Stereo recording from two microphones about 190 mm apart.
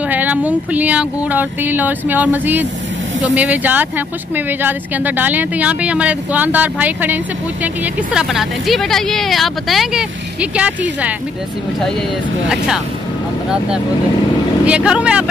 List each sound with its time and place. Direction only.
0.1 s speech: 10° right (ahead or behind)
12.4 s speech: 5° right (ahead or behind)
14.6 s speech: 5° right (ahead or behind)